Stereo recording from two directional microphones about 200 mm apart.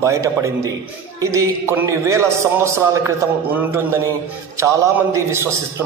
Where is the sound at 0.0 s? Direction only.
15° right (ahead or behind).